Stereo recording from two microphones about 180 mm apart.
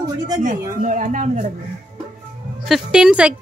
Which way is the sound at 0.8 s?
45° right (ahead or behind).